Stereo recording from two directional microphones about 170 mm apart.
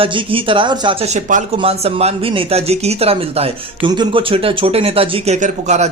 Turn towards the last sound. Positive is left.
turn(degrees=-45)  # may be behind; listen again after turning